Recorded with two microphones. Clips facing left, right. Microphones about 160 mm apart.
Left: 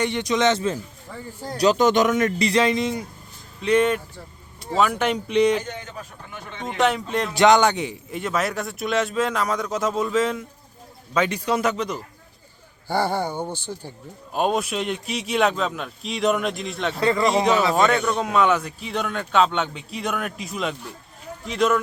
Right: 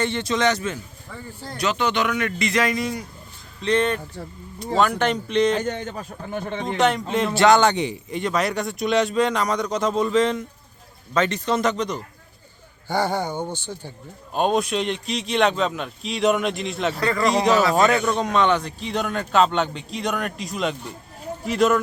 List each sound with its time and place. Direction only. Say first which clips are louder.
0.0 s a man's voice: left 1 dB; 15° left (ahead or behind)
3.6 s speech: left 2 dB; 10° left (ahead or behind)
5.6 s a man's voice: right 7 dB; 40° right (ahead or behind)
6.7 s a man's voice: right 1 dB; centre (ahead or behind)
7.3 s a man's voice: even; 15° left (ahead or behind); by 17.0 s centre (ahead or behind)
17.0 s speech: left 5 dB; 25° left (ahead or behind)
17.2 s a man's voice: right 3 dB; centre (ahead or behind)